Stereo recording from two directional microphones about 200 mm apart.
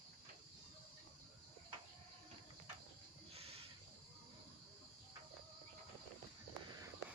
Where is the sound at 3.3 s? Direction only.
30° right (ahead or behind).